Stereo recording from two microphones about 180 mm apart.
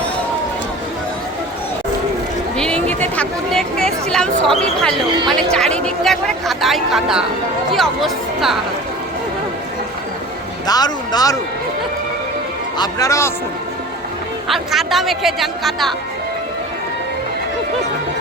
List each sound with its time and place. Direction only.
2.6 s chatter: 5° left (ahead or behind)
3.0 s a sound: 5° left (ahead or behind)
4.4 s speech: centre (ahead or behind)
10.7 s speech: 20° left (ahead or behind)
12.7 s a man's voice: 20° left (ahead or behind)
14.4 s speech: centre (ahead or behind)